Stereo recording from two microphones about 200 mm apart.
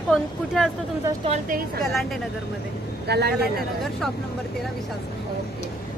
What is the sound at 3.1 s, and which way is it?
Speech, 55° right (ahead or behind).